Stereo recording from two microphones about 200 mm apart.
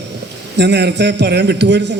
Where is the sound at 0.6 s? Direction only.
60° right (ahead or behind).